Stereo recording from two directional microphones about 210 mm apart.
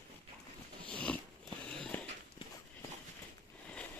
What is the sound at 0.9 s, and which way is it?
Biting, 5° left (ahead or behind).